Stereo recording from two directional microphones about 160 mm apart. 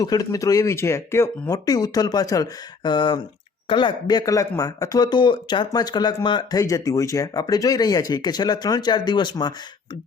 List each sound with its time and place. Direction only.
0.0 s speech: 20° left (ahead or behind)